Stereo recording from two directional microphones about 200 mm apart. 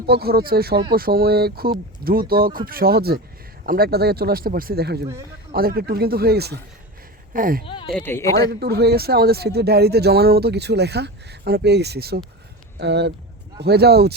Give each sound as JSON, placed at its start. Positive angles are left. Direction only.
{"t": 0.0, "sound": "speech", "side_deg": -50}
{"t": 7.6, "sound": "speech", "side_deg": 25}
{"t": 7.9, "sound": "a man's voice", "side_deg": 10}
{"t": 8.4, "sound": "speech", "side_deg": -55}